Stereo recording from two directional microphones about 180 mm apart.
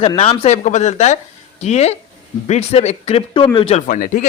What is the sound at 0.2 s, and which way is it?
A man's voice, 35° left (ahead or behind).